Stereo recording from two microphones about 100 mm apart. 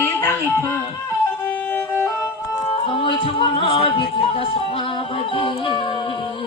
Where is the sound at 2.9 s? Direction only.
55° left (ahead or behind).